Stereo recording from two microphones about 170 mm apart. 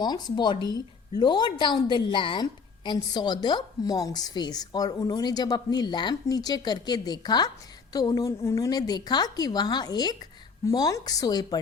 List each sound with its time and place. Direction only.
0.0 s a woman's voice: 25° left (ahead or behind)